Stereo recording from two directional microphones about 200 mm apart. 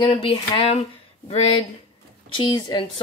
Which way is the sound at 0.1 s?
25° left (ahead or behind).